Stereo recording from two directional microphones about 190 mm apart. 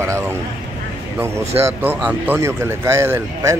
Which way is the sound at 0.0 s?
15° right (ahead or behind).